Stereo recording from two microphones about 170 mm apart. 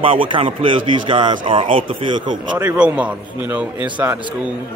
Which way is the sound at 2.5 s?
10° right (ahead or behind).